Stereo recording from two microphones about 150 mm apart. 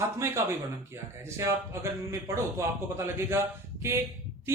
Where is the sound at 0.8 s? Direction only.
20° right (ahead or behind).